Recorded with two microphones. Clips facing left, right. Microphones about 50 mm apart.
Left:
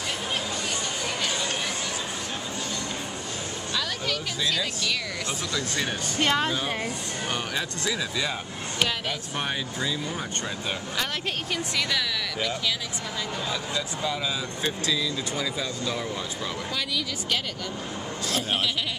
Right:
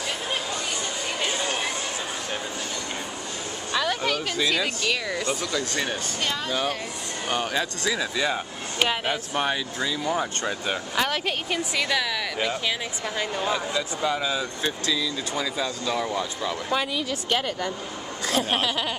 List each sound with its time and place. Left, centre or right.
3.7 s speech: right
6.1 s speech: left
7.8 s speech: centre
8.8 s speech: right
10.7 s speech: centre
16.7 s a woman's voice: right